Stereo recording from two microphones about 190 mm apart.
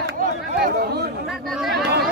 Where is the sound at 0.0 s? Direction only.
50° right (ahead or behind).